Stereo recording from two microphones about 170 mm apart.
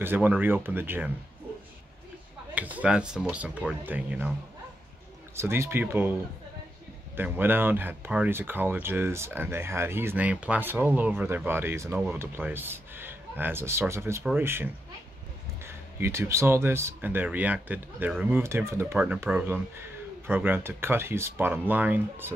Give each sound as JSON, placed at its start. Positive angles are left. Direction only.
{"t": 0.0, "sound": "speech", "side_deg": -10}
{"t": 2.5, "sound": "speech", "side_deg": -10}
{"t": 5.3, "sound": "speech", "side_deg": -15}
{"t": 7.2, "sound": "speech", "side_deg": -10}